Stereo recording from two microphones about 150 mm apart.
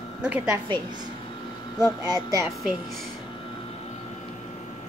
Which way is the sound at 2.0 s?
25° right (ahead or behind).